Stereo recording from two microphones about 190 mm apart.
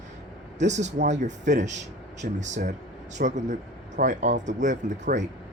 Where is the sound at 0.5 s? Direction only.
40° right (ahead or behind).